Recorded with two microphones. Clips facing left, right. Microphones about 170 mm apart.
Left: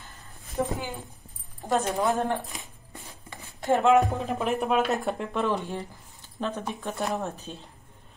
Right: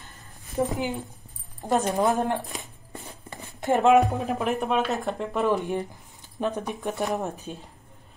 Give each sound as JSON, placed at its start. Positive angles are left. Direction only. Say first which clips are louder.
{"t": 0.7, "sound": "speech", "louder": "right 4 dB", "side_deg": -20}
{"t": 3.6, "sound": "speech", "louder": "right 2 dB", "side_deg": -20}
{"t": 4.3, "sound": "speech", "louder": "even", "side_deg": 0}
{"t": 5.5, "sound": "speech", "louder": "right 4 dB", "side_deg": -15}